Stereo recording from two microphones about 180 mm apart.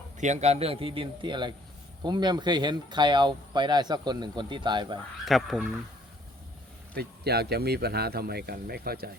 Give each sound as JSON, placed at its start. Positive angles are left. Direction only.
{"t": 0.2, "sound": "a man's voice", "side_deg": -40}
{"t": 5.2, "sound": "speech", "side_deg": 0}
{"t": 6.9, "sound": "speech", "side_deg": -60}